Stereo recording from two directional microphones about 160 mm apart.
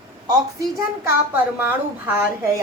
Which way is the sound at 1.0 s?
10° right (ahead or behind).